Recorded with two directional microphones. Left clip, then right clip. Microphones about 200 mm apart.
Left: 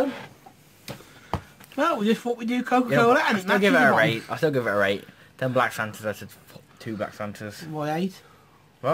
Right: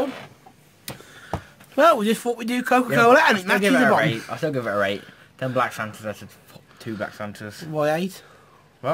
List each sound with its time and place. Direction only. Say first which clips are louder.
1.8 s speech: right 7 dB; 50° right (ahead or behind)
3.6 s speech: even; 10° left (ahead or behind)
6.5 s speech: right 2 dB; centre (ahead or behind)
7.7 s speech: right 6 dB; 50° right (ahead or behind)
8.8 s a man's voice: even; centre (ahead or behind)